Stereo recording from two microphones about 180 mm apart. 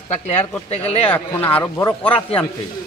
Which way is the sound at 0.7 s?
35° left (ahead or behind).